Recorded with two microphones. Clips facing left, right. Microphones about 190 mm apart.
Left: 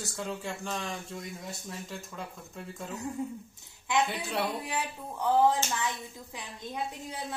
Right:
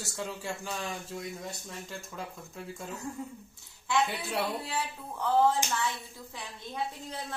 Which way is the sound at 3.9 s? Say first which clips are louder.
Even; 20° left (ahead or behind).